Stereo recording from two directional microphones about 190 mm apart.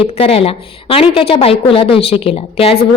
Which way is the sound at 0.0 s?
30° left (ahead or behind).